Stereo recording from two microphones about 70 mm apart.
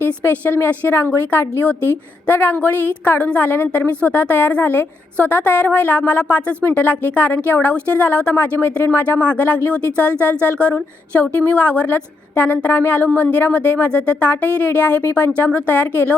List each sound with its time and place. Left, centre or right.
0.0 s a woman's voice: left